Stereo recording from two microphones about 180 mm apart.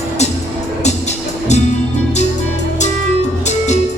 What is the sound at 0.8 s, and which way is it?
Music, 40° left (ahead or behind).